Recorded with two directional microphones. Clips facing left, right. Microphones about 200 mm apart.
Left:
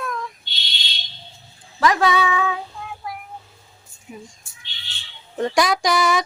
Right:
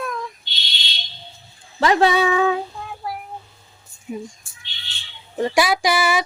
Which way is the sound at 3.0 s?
35° right (ahead or behind).